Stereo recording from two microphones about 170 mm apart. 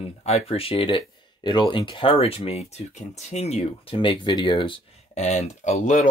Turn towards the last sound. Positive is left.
turn(degrees=45)  # may be behind; listen again after turning